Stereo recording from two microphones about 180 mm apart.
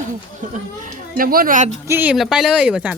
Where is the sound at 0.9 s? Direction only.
50° right (ahead or behind).